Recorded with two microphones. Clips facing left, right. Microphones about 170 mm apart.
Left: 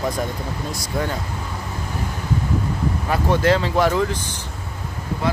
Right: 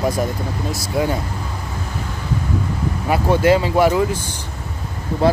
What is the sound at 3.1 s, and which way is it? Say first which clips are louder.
Speech: right 4 dB; 10° right (ahead or behind).